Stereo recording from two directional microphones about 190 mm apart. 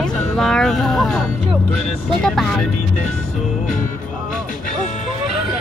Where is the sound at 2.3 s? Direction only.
5° left (ahead or behind).